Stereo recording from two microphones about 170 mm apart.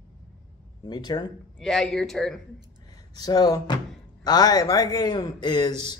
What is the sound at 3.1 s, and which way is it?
A man's voice, 20° left (ahead or behind).